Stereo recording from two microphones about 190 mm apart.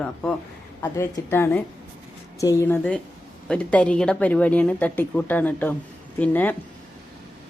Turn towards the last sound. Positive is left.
turn(degrees=10)  # may be behind; listen again after turning